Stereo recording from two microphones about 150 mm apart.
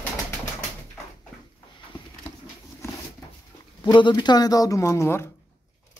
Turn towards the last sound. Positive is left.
turn(degrees=20)  # may be behind; listen again after turning